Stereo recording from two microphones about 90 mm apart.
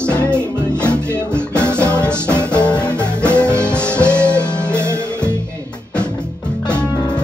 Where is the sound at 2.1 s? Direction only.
25° right (ahead or behind).